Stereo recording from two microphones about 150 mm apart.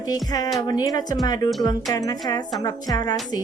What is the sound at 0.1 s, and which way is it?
A woman's voice, 25° left (ahead or behind).